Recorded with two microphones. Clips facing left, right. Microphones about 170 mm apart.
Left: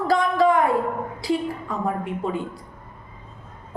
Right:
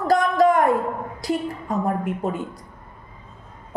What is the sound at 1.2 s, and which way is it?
A woman's voice, 45° right (ahead or behind).